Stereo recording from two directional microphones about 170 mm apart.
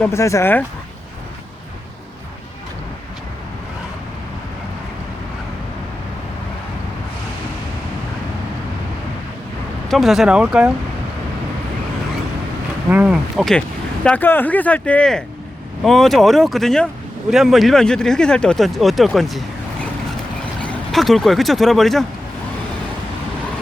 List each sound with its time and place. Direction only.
0.0 s speech: 15° left (ahead or behind)
9.9 s speech: centre (ahead or behind)
12.9 s speech: 5° right (ahead or behind)
20.6 s speech: 5° left (ahead or behind)